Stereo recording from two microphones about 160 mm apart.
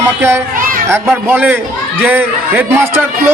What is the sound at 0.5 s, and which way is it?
Children playing, 60° right (ahead or behind).